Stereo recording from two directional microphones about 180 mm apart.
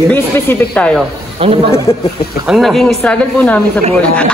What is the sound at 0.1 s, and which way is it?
Speech, 10° left (ahead or behind).